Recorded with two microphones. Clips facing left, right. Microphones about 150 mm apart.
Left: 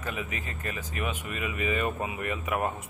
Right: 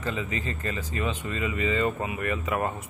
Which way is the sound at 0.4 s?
90° right.